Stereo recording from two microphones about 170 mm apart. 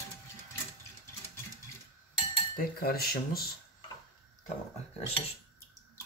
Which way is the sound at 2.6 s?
60° left (ahead or behind).